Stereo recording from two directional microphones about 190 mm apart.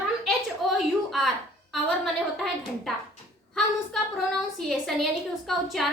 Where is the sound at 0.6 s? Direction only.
Centre (ahead or behind).